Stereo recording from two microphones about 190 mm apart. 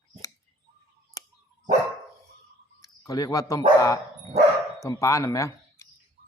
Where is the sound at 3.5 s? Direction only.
15° left (ahead or behind).